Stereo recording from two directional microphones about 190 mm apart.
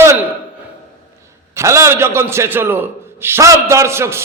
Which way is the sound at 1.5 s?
15° right (ahead or behind).